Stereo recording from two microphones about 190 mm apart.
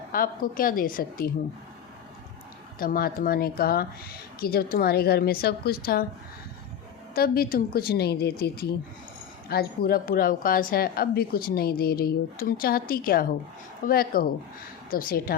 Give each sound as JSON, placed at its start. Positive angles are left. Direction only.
{"t": 0.1, "sound": "a woman's voice", "side_deg": 50}
{"t": 2.7, "sound": "a woman's voice", "side_deg": 50}
{"t": 7.1, "sound": "a woman's voice", "side_deg": 50}